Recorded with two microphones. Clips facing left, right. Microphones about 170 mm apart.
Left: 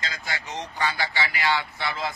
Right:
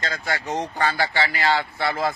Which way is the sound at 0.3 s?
55° right (ahead or behind).